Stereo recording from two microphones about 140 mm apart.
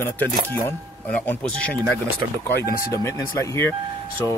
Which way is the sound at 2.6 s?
20° left (ahead or behind).